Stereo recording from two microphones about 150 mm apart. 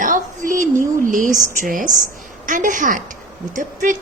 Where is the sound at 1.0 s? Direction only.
60° right (ahead or behind).